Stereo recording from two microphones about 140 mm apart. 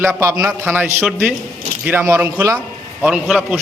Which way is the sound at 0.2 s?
20° right (ahead or behind).